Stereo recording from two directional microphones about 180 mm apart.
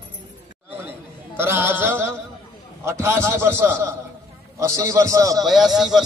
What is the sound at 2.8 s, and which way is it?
A man's voice, 15° right (ahead or behind).